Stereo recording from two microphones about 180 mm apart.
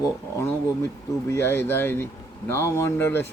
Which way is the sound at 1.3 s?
15° left (ahead or behind).